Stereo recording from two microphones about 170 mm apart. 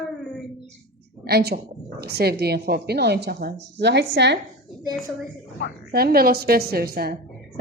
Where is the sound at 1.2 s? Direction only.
65° right (ahead or behind).